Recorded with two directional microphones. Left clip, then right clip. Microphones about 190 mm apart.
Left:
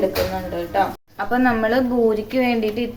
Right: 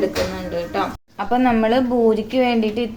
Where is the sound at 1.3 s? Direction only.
5° right (ahead or behind).